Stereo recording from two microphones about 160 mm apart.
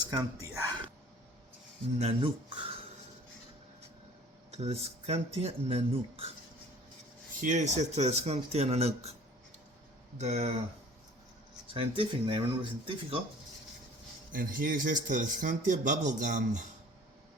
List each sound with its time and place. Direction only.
0.0 s speech: 25° right (ahead or behind)
2.0 s speech: 35° right (ahead or behind)
4.5 s speech: 40° right (ahead or behind)
7.3 s speech: 50° right (ahead or behind)
10.2 s speech: 40° right (ahead or behind)
11.7 s speech: 35° right (ahead or behind)
14.3 s speech: 60° right (ahead or behind)